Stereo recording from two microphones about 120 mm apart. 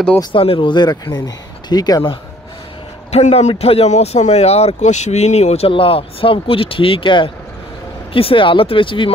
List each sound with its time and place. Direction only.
0.2 s speech: 45° left (ahead or behind)
3.1 s speech: 60° left (ahead or behind); by 9.1 s 45° left (ahead or behind)